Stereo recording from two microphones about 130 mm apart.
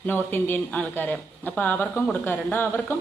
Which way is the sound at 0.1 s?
15° left (ahead or behind).